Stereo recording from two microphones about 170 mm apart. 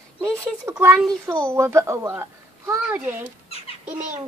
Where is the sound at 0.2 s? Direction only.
20° right (ahead or behind).